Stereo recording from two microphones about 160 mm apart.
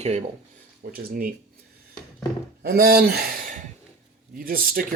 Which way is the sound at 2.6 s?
75° right (ahead or behind).